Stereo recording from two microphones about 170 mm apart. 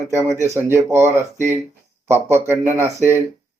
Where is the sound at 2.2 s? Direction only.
15° right (ahead or behind).